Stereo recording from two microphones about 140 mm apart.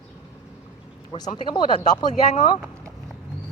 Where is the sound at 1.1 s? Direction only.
45° left (ahead or behind).